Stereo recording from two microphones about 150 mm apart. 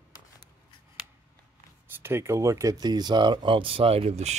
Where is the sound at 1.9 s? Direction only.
15° right (ahead or behind).